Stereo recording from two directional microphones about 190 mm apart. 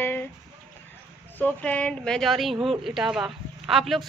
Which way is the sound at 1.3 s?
10° left (ahead or behind).